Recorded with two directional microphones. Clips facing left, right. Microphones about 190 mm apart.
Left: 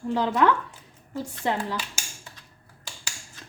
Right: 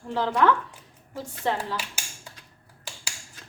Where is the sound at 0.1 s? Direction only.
15° left (ahead or behind).